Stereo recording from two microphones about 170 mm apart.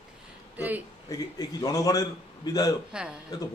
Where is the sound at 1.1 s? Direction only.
20° left (ahead or behind).